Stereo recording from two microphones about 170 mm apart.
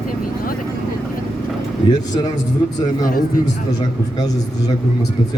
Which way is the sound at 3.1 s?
55° left (ahead or behind).